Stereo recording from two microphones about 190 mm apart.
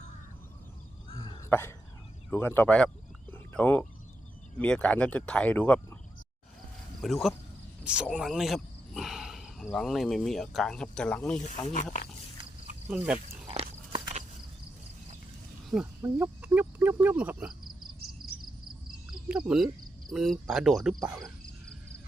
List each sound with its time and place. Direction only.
1.2 s cough: 20° left (ahead or behind)
2.3 s speech: 10° left (ahead or behind)
3.3 s a sound: 10° left (ahead or behind)
4.5 s speech: 5° left (ahead or behind)
7.0 s speech: centre (ahead or behind)
11.3 s speech: 40° left (ahead or behind)
12.9 s speech: 5° right (ahead or behind)
13.9 s walk: 35° right (ahead or behind)
16.0 s speech: 15° right (ahead or behind)
19.5 s speech: centre (ahead or behind)